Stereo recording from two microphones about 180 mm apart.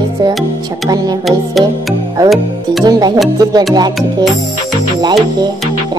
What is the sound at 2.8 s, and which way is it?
Speech, 20° right (ahead or behind).